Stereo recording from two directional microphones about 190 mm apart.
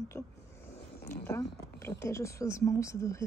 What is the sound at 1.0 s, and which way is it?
A woman's voice, 15° left (ahead or behind).